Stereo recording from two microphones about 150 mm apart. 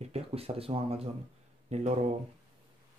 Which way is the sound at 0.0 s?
45° right (ahead or behind).